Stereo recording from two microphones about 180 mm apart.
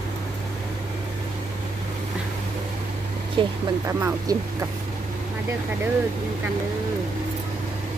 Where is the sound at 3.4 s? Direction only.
30° right (ahead or behind).